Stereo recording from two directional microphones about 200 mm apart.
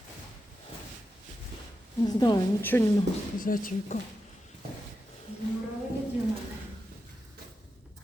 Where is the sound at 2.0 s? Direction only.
20° left (ahead or behind).